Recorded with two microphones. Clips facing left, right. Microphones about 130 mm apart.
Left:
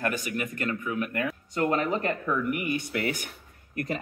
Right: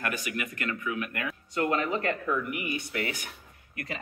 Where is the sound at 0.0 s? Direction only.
40° left (ahead or behind).